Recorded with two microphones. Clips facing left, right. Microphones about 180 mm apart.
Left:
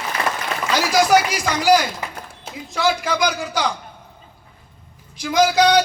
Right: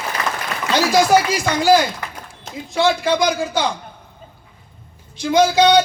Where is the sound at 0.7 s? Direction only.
25° right (ahead or behind).